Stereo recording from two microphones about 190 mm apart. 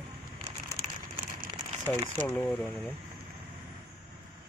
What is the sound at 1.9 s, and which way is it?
Speech, 15° left (ahead or behind).